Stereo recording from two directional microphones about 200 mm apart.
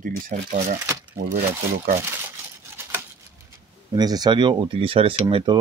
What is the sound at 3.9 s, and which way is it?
Speech, 20° right (ahead or behind).